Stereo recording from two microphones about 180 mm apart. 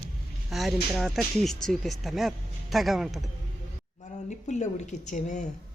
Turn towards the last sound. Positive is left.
turn(degrees=45)  # may be behind; listen again after turning